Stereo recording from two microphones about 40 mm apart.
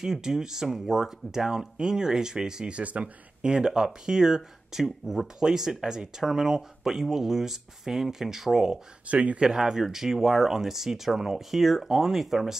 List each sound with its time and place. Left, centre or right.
0.0 s speech: centre
2.8 s speech: right
3.5 s speech: centre
9.0 s speech: right
9.4 s speech: centre